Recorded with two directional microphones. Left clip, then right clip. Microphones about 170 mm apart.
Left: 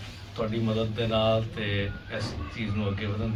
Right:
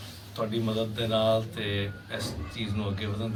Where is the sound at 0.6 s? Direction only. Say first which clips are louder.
Left 1 dB; 15° right (ahead or behind).